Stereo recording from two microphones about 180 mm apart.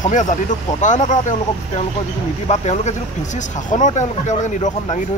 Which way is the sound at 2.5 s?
40° left (ahead or behind).